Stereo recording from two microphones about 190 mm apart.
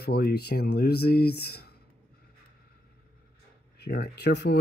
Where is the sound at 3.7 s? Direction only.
55° left (ahead or behind).